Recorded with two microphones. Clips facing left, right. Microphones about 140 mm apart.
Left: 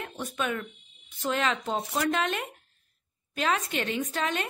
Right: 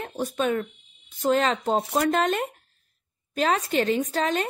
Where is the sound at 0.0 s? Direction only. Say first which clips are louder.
Right 6 dB; 35° right (ahead or behind).